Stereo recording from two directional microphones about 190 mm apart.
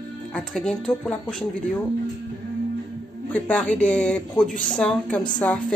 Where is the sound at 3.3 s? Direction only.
5° left (ahead or behind).